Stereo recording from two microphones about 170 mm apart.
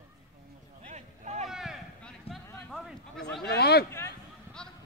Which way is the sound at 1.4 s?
Centre (ahead or behind).